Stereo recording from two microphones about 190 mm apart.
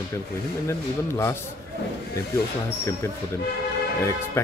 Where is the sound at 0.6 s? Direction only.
15° left (ahead or behind).